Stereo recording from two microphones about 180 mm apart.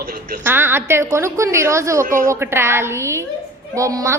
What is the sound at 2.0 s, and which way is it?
Speech, 50° right (ahead or behind).